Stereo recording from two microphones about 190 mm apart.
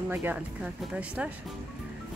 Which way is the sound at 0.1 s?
10° right (ahead or behind).